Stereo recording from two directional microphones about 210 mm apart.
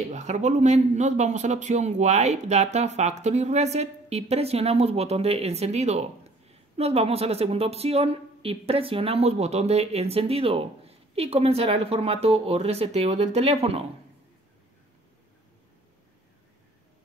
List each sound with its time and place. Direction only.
0.1 s a man's voice: 35° right (ahead or behind)